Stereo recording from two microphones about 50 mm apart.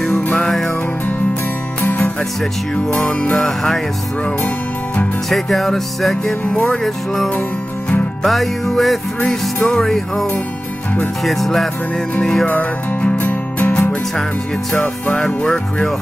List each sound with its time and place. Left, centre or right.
0.0 s music: centre
1.8 s music: left
3.1 s music: left
3.3 s music: centre
5.3 s speech: centre
8.2 s speech: centre
9.3 s music: centre
11.2 s speech: centre
12.2 s music: centre
12.4 s music: left
13.2 s music: left
14.8 s music: centre